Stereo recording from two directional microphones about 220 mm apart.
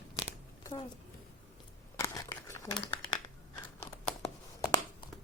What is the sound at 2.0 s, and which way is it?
Crumpling, 15° left (ahead or behind).